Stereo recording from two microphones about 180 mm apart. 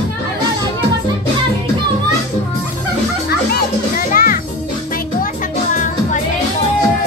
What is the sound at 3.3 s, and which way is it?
Children playing, 55° left (ahead or behind).